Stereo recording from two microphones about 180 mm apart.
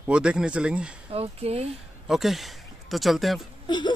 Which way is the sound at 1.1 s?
35° right (ahead or behind).